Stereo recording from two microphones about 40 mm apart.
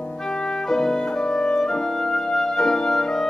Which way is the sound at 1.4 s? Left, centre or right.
Centre.